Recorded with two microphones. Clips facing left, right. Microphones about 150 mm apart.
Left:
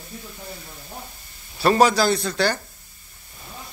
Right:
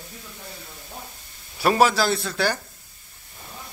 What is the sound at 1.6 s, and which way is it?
Speech, 5° right (ahead or behind).